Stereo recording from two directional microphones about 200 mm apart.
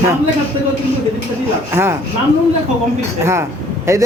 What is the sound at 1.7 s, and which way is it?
Speech, 10° right (ahead or behind).